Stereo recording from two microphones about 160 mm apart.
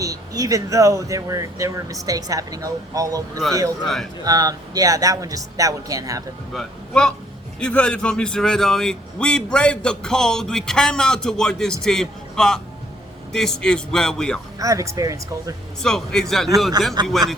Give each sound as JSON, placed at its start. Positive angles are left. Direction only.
{"t": 0.0, "sound": "speech", "side_deg": -20}
{"t": 3.8, "sound": "a man's voice", "side_deg": 0}
{"t": 4.2, "sound": "speech", "side_deg": -25}
{"t": 6.5, "sound": "a man's voice", "side_deg": 5}
{"t": 14.6, "sound": "speech", "side_deg": -20}
{"t": 15.8, "sound": "a man's voice", "side_deg": 5}